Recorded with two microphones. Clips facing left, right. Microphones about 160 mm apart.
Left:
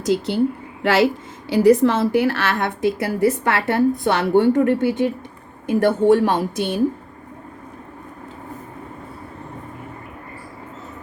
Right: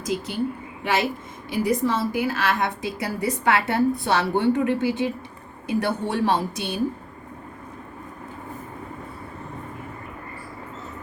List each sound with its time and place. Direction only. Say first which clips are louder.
0.0 s speech: left 7 dB; 75° left (ahead or behind)
0.8 s speech: left 7 dB; 90° left
1.5 s a woman's voice: left 9 dB; 75° left (ahead or behind); by 6.7 s 50° left (ahead or behind)